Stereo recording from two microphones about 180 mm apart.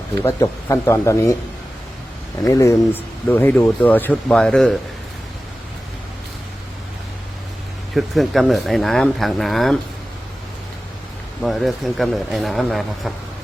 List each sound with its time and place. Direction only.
0.2 s speech: 15° left (ahead or behind)
2.5 s speech: 15° left (ahead or behind)
7.9 s speech: centre (ahead or behind)
11.4 s speech: centre (ahead or behind)